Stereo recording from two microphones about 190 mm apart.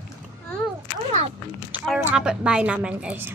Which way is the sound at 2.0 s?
5° right (ahead or behind).